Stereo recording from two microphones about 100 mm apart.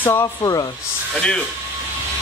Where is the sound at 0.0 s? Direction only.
30° left (ahead or behind).